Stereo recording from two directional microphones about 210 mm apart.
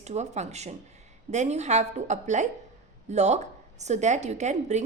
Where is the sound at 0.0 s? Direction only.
30° right (ahead or behind).